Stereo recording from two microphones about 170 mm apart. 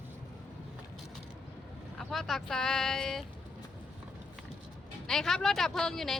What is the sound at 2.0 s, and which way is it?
Speech, centre (ahead or behind).